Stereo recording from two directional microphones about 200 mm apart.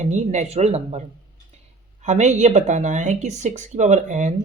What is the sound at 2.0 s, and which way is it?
Speech, 35° right (ahead or behind).